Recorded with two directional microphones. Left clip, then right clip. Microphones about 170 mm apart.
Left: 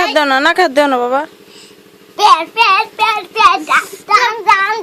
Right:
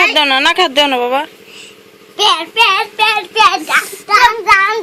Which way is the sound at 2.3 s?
20° left (ahead or behind).